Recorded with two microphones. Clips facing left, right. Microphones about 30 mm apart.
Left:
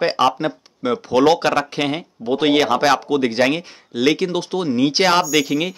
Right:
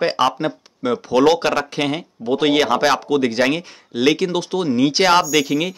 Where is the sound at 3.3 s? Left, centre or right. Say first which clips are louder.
Left 1 dB; centre.